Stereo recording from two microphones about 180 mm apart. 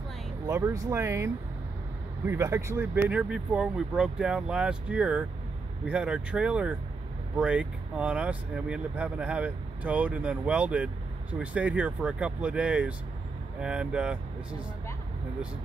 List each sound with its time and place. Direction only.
0.5 s speech: 15° right (ahead or behind)